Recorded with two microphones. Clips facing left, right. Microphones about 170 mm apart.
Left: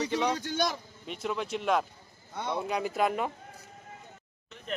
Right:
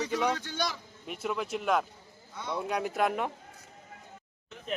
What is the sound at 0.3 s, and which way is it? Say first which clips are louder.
Speech: left 4 dB; 45° left (ahead or behind).